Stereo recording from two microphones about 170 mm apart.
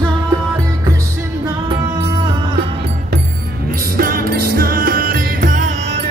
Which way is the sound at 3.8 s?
60° right (ahead or behind).